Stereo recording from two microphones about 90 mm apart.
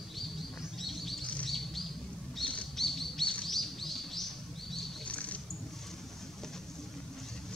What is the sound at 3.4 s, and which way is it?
Bird, centre (ahead or behind).